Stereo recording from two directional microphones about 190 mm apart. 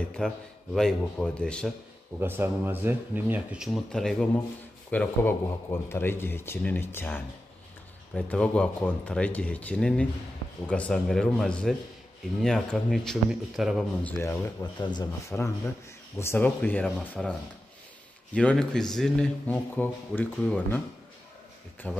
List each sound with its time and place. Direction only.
0.2 s speech: 5° left (ahead or behind)
2.1 s speech: 10° right (ahead or behind)
14.2 s speech: 20° left (ahead or behind); by 17.3 s 5° left (ahead or behind)
18.3 s speech: 5° left (ahead or behind)
21.8 s speech: 5° left (ahead or behind)